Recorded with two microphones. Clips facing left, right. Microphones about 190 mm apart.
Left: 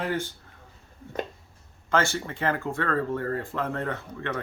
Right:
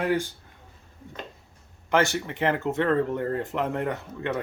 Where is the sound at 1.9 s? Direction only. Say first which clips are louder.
Right 2 dB; 15° right (ahead or behind).